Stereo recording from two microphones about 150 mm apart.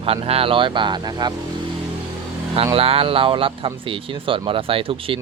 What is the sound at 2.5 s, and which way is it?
Speech, 40° right (ahead or behind).